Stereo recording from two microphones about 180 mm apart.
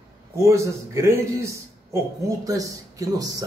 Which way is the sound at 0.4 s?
15° right (ahead or behind).